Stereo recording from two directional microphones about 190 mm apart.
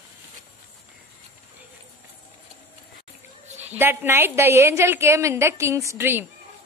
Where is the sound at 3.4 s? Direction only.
35° right (ahead or behind).